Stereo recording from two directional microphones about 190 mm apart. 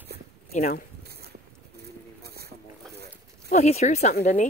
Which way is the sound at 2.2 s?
55° right (ahead or behind).